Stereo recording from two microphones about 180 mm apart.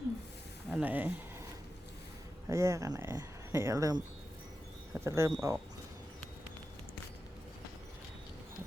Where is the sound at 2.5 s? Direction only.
15° right (ahead or behind).